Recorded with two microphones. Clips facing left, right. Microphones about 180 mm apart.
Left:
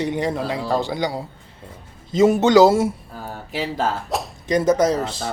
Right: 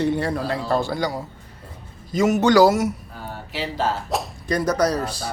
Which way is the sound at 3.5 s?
45° left (ahead or behind).